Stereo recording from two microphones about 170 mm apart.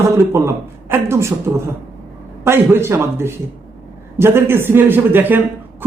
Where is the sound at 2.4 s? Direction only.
15° right (ahead or behind).